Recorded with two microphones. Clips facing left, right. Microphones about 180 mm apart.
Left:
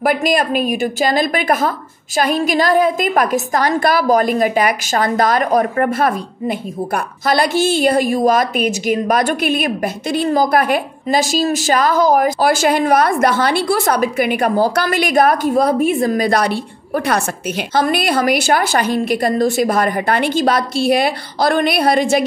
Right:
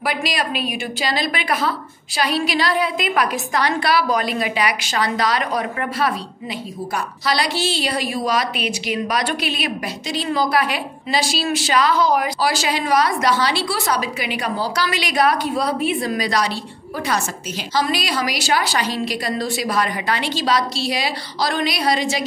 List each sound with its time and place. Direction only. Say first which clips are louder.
0.0 s a woman's voice: left 8 dB; 50° left (ahead or behind)